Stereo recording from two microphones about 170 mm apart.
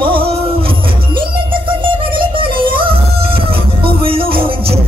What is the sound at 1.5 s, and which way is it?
Music, 30° right (ahead or behind).